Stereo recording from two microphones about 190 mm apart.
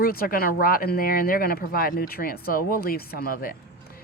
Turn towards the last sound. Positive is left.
turn(degrees=50)  # may be behind; listen again after turning